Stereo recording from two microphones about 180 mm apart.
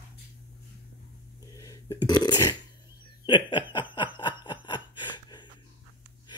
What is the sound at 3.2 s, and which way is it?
Snicker, 25° left (ahead or behind).